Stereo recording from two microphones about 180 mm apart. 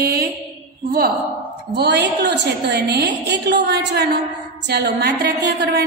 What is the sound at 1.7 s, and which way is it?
A woman's voice, 70° right (ahead or behind).